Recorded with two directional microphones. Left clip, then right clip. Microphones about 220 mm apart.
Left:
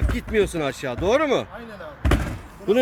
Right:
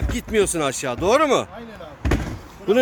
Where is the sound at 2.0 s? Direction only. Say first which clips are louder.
Even; 35° left (ahead or behind).